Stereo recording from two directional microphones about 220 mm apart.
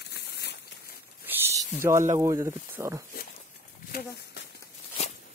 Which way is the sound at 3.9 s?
45° left (ahead or behind).